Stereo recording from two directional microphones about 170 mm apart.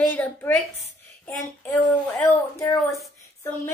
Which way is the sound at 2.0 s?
15° left (ahead or behind).